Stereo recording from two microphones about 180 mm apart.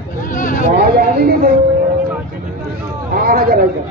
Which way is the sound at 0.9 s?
60° right (ahead or behind).